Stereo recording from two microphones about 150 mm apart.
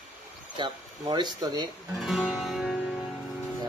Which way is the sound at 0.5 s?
30° right (ahead or behind).